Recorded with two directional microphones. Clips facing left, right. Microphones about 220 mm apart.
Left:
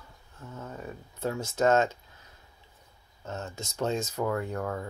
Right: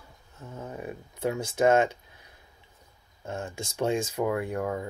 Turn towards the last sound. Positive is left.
turn(degrees=-10)  # may be behind; listen again after turning